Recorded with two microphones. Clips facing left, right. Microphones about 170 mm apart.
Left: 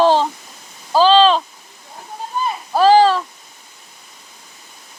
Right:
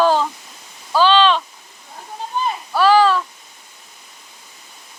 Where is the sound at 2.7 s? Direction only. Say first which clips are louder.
Left 3 dB; 35° left (ahead or behind).